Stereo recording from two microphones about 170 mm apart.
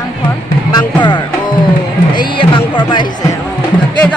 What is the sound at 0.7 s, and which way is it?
Music, 25° left (ahead or behind).